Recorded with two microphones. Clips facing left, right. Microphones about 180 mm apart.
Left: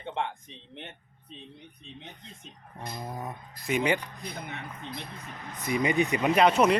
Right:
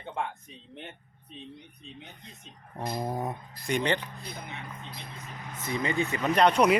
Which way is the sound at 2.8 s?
35° right (ahead or behind).